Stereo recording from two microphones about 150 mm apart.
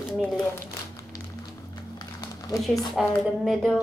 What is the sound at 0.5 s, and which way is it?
Crumpling, 20° left (ahead or behind).